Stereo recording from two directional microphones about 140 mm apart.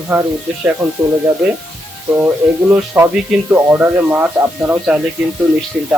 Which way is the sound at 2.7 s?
15° right (ahead or behind).